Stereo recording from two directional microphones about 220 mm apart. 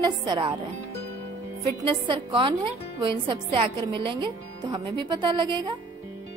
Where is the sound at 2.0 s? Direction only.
20° right (ahead or behind).